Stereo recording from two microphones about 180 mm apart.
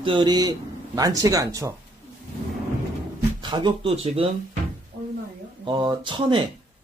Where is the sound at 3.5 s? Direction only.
30° right (ahead or behind).